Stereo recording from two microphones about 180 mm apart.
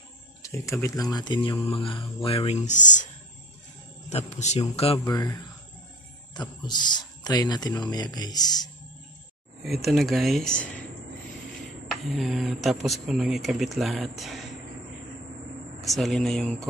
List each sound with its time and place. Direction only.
0.4 s a man's voice: 15° left (ahead or behind); by 3.1 s 45° left (ahead or behind)
4.1 s a man's voice: 40° left (ahead or behind)
5.0 s speech: 20° left (ahead or behind)
9.7 s speech: centre (ahead or behind)
11.9 s speech: centre (ahead or behind)
15.8 s speech: centre (ahead or behind)